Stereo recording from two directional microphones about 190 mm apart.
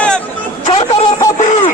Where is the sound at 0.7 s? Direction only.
25° left (ahead or behind).